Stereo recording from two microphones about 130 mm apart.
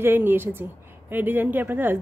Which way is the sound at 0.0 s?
15° right (ahead or behind).